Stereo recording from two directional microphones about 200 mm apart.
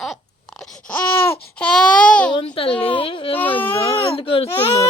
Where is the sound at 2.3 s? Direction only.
25° left (ahead or behind).